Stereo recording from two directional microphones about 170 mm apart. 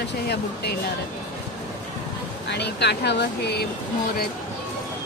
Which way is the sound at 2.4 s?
80° left.